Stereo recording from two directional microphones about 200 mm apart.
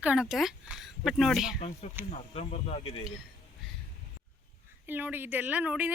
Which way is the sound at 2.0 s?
35° left (ahead or behind).